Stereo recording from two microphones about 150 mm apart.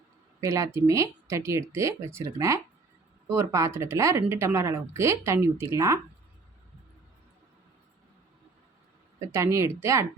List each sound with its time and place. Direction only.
0.4 s speech: 20° right (ahead or behind)
9.3 s speech: 20° right (ahead or behind)